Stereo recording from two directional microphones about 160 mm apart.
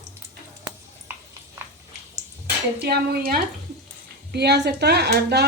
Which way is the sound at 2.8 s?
80° right.